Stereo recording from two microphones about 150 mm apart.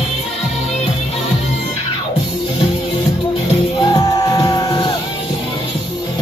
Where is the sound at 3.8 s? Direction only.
25° left (ahead or behind).